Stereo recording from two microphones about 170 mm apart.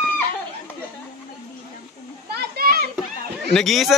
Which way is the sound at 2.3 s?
65° right (ahead or behind).